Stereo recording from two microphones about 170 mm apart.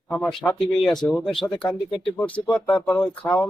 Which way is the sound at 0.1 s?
5° left (ahead or behind).